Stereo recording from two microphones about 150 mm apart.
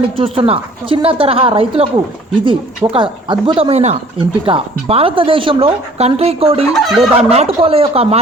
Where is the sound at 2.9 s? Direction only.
35° right (ahead or behind).